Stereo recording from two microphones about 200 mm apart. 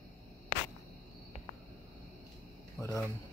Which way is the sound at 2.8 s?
5° left (ahead or behind).